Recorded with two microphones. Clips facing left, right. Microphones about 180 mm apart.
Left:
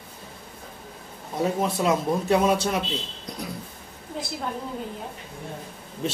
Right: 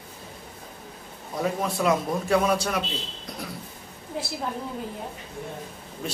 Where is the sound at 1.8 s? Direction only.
25° left (ahead or behind).